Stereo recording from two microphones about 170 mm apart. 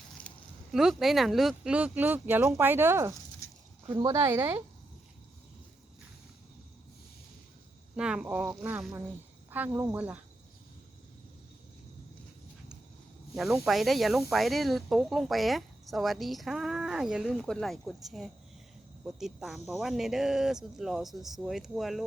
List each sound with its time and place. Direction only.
0.2 s a sound: 10° left (ahead or behind)
0.7 s speech: centre (ahead or behind)
3.4 s a sound: 15° left (ahead or behind)
3.9 s speech: 20° right (ahead or behind)
7.9 s speech: 5° right (ahead or behind)
13.3 s speech: centre (ahead or behind)